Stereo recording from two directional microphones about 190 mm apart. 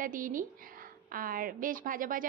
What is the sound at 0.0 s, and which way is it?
A woman's voice, 45° right (ahead or behind).